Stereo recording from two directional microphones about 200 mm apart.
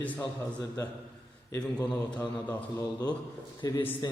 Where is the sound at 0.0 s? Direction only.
10° left (ahead or behind).